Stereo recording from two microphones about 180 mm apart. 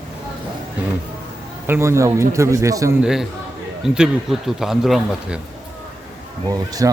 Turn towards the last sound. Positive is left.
turn(degrees=-20)  # may be behind; listen again after turning